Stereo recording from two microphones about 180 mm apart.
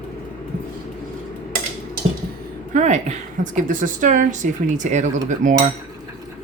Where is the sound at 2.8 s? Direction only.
40° right (ahead or behind).